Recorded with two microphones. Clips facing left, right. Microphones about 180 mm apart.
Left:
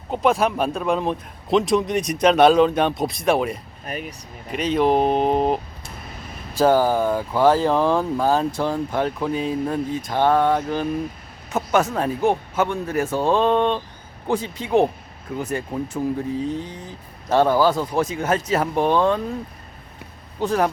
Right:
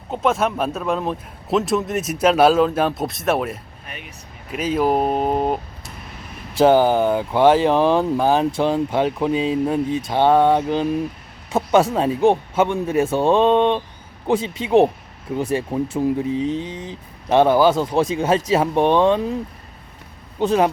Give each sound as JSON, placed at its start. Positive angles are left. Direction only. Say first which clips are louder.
{"t": 0.1, "sound": "speech", "louder": "left 1 dB", "side_deg": 0}
{"t": 3.8, "sound": "speech", "louder": "left 9 dB", "side_deg": 40}
{"t": 4.5, "sound": "speech", "louder": "even", "side_deg": -5}
{"t": 6.5, "sound": "speech", "louder": "right 3 dB", "side_deg": -20}
{"t": 20.4, "sound": "speech", "louder": "right 3 dB", "side_deg": -20}